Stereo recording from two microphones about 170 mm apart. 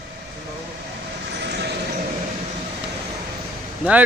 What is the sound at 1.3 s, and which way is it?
Train, 80° right.